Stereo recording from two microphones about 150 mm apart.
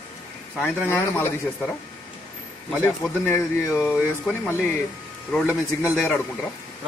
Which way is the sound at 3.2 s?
20° left (ahead or behind).